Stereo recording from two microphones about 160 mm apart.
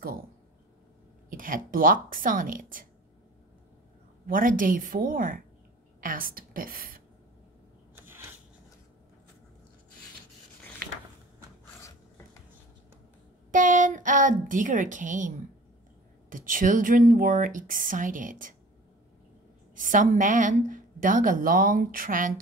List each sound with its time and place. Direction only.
1.3 s a woman's voice: 60° right (ahead or behind)
4.3 s a woman's voice: 60° right (ahead or behind)
13.5 s a woman's voice: 55° right (ahead or behind)
19.7 s a woman's voice: 55° right (ahead or behind)